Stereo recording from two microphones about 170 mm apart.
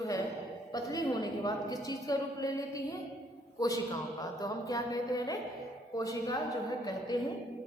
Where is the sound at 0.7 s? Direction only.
25° left (ahead or behind).